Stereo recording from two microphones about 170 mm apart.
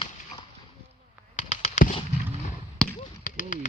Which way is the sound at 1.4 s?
45° left (ahead or behind).